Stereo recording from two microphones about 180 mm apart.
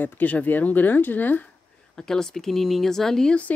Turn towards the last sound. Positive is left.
turn(degrees=5)  # may be behind; listen again after turning